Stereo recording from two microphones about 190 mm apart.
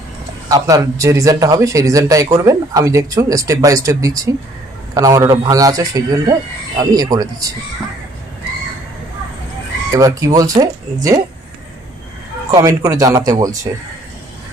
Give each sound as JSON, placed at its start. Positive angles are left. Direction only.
{"t": 0.4, "sound": "a man's voice", "side_deg": -20}
{"t": 9.9, "sound": "speech", "side_deg": -15}
{"t": 12.5, "sound": "a man's voice", "side_deg": -20}